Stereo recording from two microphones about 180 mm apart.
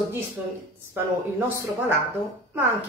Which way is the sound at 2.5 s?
10° right (ahead or behind).